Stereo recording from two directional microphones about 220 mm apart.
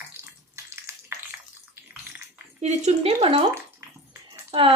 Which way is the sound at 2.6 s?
30° right (ahead or behind).